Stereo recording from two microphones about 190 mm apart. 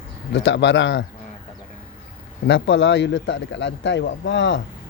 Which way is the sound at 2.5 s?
75° left (ahead or behind).